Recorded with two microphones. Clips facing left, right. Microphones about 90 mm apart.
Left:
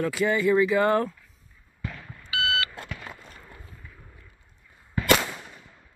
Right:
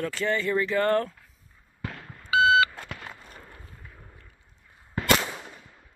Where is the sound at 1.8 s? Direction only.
40° right (ahead or behind).